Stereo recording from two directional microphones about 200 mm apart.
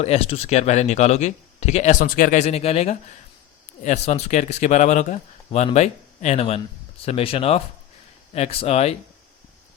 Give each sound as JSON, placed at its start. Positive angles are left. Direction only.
{"t": 0.0, "sound": "a man's voice", "side_deg": 30}